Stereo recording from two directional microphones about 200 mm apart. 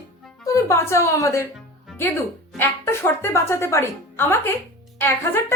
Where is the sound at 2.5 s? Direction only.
10° left (ahead or behind).